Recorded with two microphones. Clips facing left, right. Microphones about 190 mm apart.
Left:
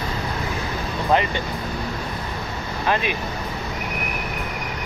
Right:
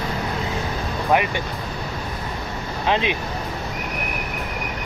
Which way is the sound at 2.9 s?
20° right (ahead or behind).